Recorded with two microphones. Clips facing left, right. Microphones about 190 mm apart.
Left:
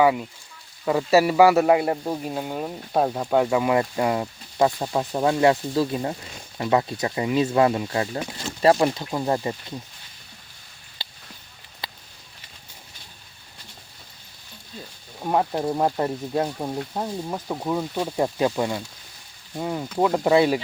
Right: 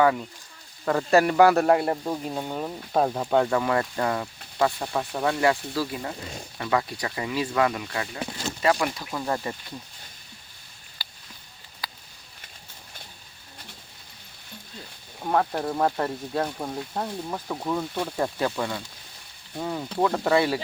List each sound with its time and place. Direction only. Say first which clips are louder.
0.0 s a man's voice: left 2 dB; 10° left (ahead or behind)
11.0 s a sound: left 3 dB; 25° left (ahead or behind)
15.2 s a man's voice: left 2 dB; 15° left (ahead or behind)